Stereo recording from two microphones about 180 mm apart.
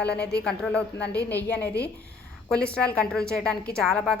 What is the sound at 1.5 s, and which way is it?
Speech, 65° left (ahead or behind).